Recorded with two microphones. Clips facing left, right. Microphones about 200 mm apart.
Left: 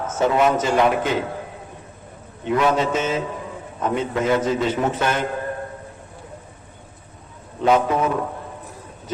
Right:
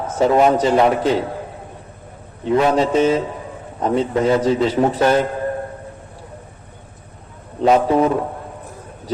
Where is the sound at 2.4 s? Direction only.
35° right (ahead or behind).